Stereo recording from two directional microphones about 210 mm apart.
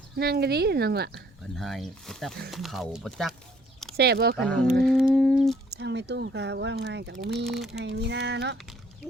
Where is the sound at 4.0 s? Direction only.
50° right (ahead or behind).